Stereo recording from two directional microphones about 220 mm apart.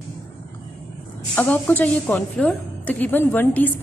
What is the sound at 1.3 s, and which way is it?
A woman's voice, 10° left (ahead or behind).